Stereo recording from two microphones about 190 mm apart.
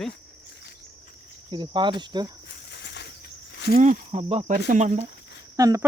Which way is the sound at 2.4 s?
65° left (ahead or behind).